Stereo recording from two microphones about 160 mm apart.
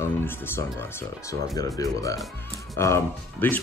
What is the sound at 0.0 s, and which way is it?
Speech, 15° left (ahead or behind).